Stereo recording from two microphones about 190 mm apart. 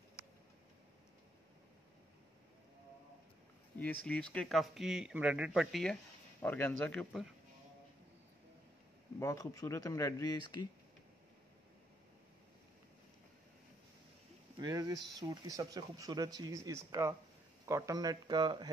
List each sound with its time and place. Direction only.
3.7 s speech: 10° left (ahead or behind)
9.2 s speech: 15° left (ahead or behind)
14.6 s speech: 20° right (ahead or behind)